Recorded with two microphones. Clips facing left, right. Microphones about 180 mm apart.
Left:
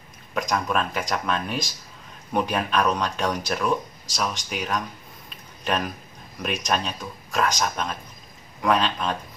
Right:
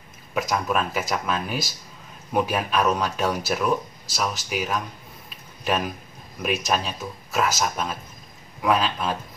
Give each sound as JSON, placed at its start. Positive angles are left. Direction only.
{"t": 0.3, "sound": "speech", "side_deg": -5}